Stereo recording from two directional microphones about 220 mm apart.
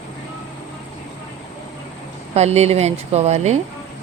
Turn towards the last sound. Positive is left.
turn(degrees=-30)  # may be behind; listen again after turning